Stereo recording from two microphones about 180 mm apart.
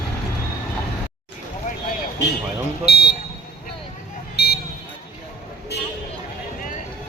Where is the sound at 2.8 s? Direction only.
60° left (ahead or behind).